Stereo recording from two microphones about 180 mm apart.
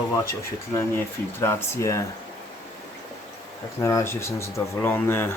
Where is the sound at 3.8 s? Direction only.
15° left (ahead or behind).